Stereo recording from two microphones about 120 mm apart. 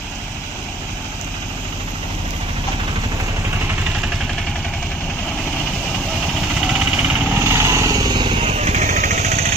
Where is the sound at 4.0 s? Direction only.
5° right (ahead or behind).